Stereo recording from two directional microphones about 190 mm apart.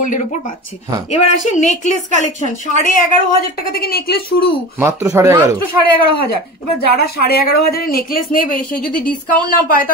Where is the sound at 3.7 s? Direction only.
55° left (ahead or behind).